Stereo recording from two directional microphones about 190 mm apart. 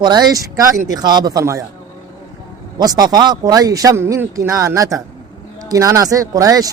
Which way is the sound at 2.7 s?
20° right (ahead or behind).